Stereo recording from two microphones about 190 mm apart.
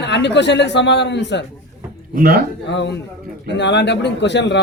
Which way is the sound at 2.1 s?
50° right (ahead or behind).